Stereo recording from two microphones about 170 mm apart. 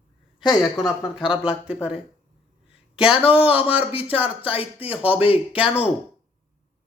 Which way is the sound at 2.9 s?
5° right (ahead or behind).